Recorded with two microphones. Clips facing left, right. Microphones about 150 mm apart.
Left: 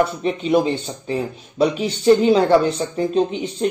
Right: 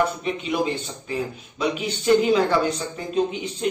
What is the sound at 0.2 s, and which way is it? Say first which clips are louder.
Speech: left 6 dB; 30° left (ahead or behind).